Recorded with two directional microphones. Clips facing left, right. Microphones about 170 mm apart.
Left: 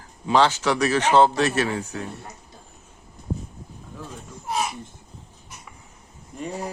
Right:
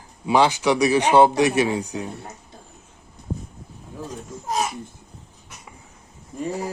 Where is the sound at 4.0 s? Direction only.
40° right (ahead or behind).